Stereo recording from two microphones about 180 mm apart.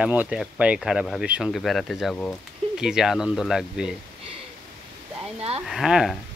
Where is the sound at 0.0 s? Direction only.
5° right (ahead or behind).